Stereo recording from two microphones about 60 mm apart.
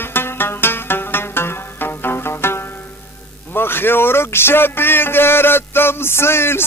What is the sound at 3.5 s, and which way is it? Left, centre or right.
A man's voice, left.